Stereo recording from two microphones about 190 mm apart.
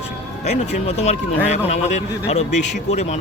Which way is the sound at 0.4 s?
35° left (ahead or behind).